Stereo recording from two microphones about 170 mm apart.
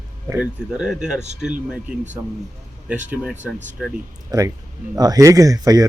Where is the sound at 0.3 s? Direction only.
5° right (ahead or behind).